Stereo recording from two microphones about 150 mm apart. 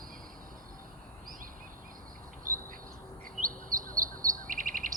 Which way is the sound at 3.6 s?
65° right (ahead or behind).